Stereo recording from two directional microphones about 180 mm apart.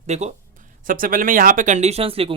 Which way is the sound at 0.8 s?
50° right (ahead or behind).